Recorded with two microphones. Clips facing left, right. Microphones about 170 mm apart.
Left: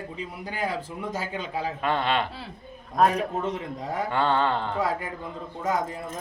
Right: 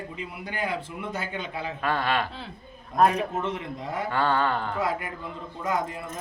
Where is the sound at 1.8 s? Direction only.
20° left (ahead or behind).